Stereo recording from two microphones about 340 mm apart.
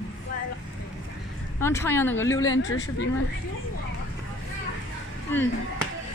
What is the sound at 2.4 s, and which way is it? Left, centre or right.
Speech, left.